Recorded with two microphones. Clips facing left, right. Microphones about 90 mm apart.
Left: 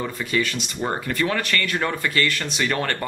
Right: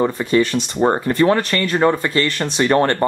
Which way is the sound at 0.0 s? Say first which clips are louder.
Right 8 dB; 35° right (ahead or behind).